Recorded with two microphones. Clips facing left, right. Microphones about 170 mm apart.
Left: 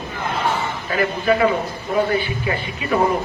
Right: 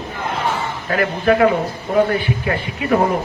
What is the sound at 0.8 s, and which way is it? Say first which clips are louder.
Speech: right 3 dB; 60° right (ahead or behind).